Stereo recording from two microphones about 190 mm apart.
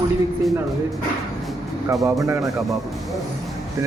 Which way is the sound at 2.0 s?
15° right (ahead or behind).